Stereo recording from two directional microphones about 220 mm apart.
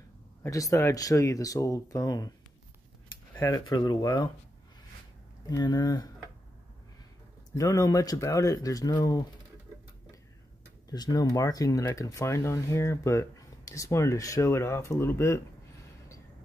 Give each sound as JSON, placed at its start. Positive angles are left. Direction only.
{"t": 0.4, "sound": "speech", "side_deg": 15}
{"t": 3.3, "sound": "speech", "side_deg": 15}
{"t": 5.5, "sound": "speech", "side_deg": 15}
{"t": 7.5, "sound": "speech", "side_deg": 15}
{"t": 10.9, "sound": "speech", "side_deg": 15}